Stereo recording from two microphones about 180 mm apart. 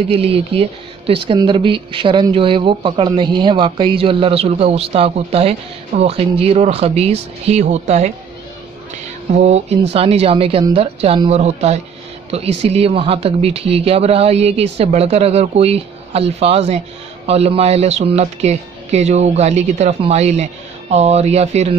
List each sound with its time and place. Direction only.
0.1 s speech: 30° right (ahead or behind)
9.4 s speech: 35° right (ahead or behind)